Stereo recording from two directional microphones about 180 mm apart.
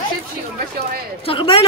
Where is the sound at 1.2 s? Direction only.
30° left (ahead or behind).